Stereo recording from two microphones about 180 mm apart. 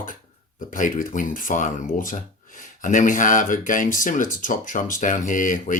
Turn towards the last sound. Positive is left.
turn(degrees=45)  # may be behind; listen again after turning